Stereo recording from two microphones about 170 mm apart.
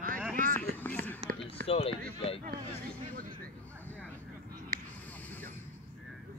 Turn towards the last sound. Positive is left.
turn(degrees=10)  # may be behind; listen again after turning